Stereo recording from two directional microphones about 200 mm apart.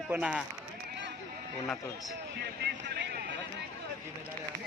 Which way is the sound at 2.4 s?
55° right (ahead or behind).